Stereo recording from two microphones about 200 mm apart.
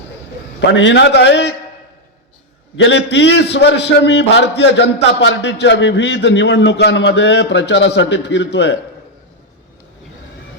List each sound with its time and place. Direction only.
0.7 s a man's voice: 65° left (ahead or behind)
2.7 s a man's voice: 60° left (ahead or behind)